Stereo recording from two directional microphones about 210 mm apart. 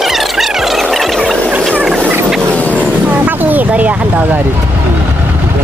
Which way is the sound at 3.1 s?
10° right (ahead or behind).